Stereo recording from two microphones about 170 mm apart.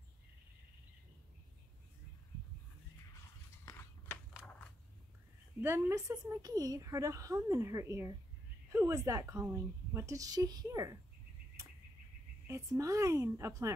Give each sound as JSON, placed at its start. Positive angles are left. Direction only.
{"t": 3.6, "sound": "biting", "side_deg": 15}
{"t": 5.6, "sound": "a woman's voice", "side_deg": -15}
{"t": 12.4, "sound": "a woman's voice", "side_deg": -20}